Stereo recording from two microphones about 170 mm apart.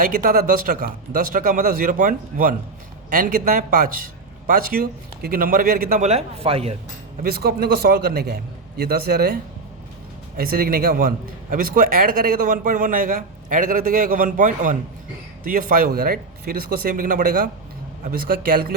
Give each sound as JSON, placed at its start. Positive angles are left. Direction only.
{"t": 0.0, "sound": "a man's voice", "side_deg": -55}
{"t": 7.2, "sound": "a man's voice", "side_deg": -65}